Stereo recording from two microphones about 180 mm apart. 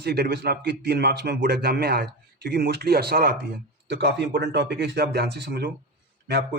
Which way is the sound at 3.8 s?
75° right (ahead or behind).